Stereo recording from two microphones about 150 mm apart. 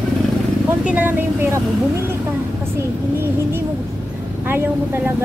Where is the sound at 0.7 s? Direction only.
10° right (ahead or behind).